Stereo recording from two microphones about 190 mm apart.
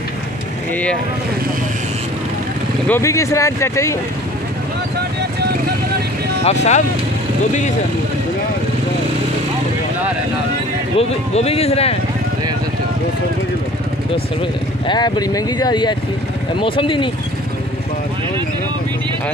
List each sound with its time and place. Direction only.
2.9 s speech: 15° left (ahead or behind)
6.4 s speech: 35° left (ahead or behind)
11.0 s speech: 30° left (ahead or behind)
14.9 s speech: 20° left (ahead or behind)